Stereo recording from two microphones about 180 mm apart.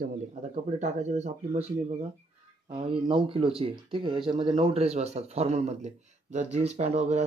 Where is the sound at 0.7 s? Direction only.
40° right (ahead or behind).